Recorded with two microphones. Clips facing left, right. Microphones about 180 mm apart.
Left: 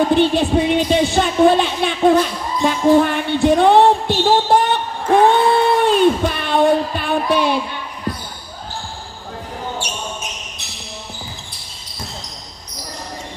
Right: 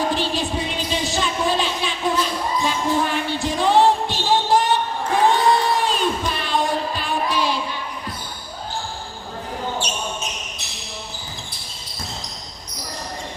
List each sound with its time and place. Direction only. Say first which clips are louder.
0.1 s a woman's voice: left 9 dB; 60° left (ahead or behind)
2.6 s music: left 11 dB; 55° left (ahead or behind)